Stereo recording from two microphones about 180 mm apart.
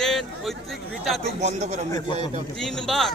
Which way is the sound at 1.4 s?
40° right (ahead or behind).